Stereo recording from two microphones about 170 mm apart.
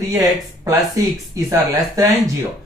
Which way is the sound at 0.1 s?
20° right (ahead or behind).